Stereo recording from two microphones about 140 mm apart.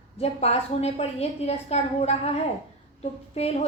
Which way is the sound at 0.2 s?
50° left (ahead or behind).